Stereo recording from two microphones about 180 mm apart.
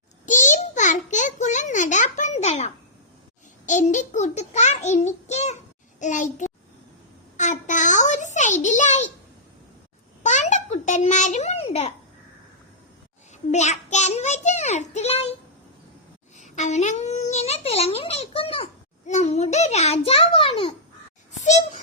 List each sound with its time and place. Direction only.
0.3 s a sound: 45° left (ahead or behind)
3.7 s a child's voice: 45° left (ahead or behind)
7.3 s a sound: 45° left (ahead or behind)
10.2 s babbling: 40° left (ahead or behind)
13.5 s a child's voice: 40° left (ahead or behind)
16.4 s a child's voice: 40° left (ahead or behind)